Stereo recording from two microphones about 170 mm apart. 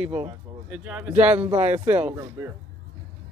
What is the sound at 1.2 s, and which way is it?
Speech, 35° right (ahead or behind).